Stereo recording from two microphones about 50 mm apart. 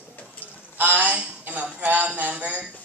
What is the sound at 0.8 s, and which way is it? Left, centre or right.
A man's voice, right.